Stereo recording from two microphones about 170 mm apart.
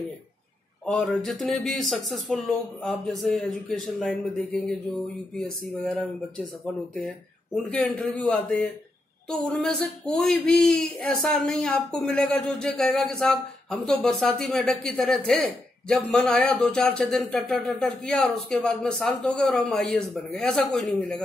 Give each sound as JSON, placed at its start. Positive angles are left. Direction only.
{"t": 0.8, "sound": "a man's voice", "side_deg": 5}